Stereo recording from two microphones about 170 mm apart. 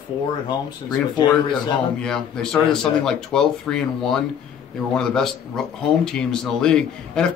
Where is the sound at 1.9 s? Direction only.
5° left (ahead or behind).